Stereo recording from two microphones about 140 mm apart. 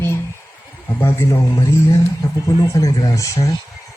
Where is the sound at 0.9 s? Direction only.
20° left (ahead or behind).